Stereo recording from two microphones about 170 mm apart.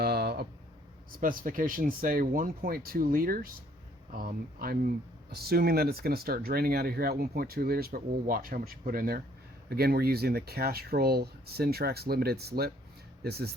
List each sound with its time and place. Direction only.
0.0 s a sound: 70° right (ahead or behind)
1.2 s speech: 55° right (ahead or behind)
4.6 s speech: 60° right (ahead or behind)